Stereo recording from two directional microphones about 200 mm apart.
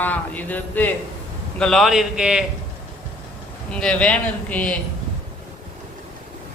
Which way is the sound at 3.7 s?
5° left (ahead or behind).